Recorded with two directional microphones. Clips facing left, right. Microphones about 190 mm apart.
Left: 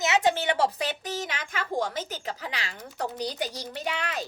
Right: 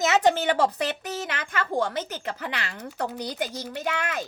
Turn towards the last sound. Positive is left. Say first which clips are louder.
# right 3 dB
turn(degrees=-55)  # may be behind; listen again after turning